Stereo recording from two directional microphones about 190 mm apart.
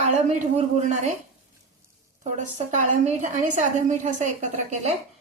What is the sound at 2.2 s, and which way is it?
A woman's voice, 40° right (ahead or behind).